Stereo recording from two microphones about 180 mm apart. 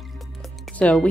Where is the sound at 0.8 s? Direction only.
5° left (ahead or behind).